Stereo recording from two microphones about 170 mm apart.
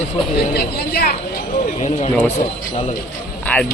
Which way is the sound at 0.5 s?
65° left (ahead or behind).